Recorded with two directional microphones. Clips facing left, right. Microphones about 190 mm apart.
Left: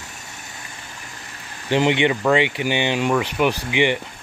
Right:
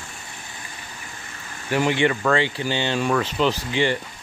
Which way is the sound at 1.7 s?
20° left (ahead or behind).